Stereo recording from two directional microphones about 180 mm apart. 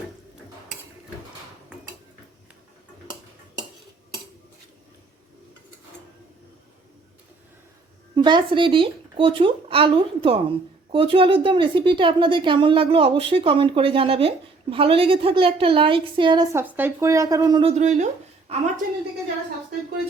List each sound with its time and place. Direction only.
8.1 s speech: 25° right (ahead or behind)